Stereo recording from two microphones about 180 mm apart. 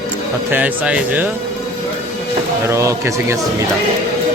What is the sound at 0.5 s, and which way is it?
Speech, 5° right (ahead or behind).